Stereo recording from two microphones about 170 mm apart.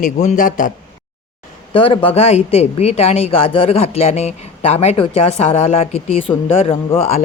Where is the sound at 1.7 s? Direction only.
30° left (ahead or behind).